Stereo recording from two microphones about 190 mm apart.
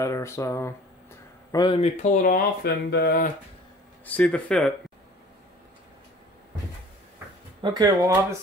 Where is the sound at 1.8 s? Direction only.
40° left (ahead or behind); by 3.3 s 60° left (ahead or behind).